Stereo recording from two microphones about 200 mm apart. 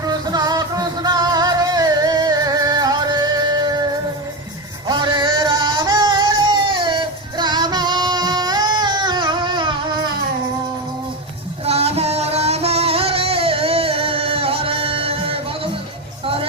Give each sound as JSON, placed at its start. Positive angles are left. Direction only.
{"t": 0.0, "sound": "music", "side_deg": -20}
{"t": 4.9, "sound": "music", "side_deg": -20}
{"t": 11.6, "sound": "music", "side_deg": -30}